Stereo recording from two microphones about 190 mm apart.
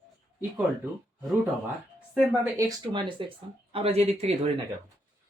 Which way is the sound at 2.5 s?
20° right (ahead or behind).